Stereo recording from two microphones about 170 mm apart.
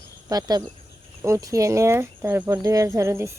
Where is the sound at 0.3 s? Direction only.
25° right (ahead or behind).